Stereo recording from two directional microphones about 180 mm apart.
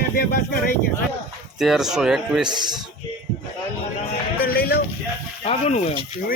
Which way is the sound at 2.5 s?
25° right (ahead or behind).